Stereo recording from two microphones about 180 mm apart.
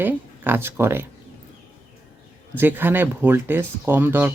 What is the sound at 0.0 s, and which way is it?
Speech, 10° right (ahead or behind).